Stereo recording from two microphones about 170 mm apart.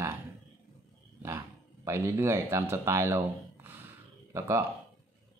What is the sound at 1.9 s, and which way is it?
Speech, 15° right (ahead or behind).